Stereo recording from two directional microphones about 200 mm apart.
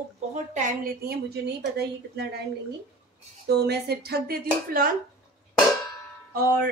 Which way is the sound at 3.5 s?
55° right (ahead or behind).